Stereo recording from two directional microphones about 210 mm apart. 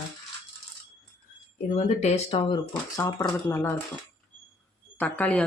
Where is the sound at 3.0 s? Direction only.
15° left (ahead or behind).